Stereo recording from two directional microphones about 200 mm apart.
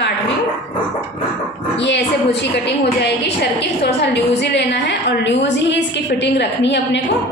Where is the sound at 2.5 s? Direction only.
55° left (ahead or behind).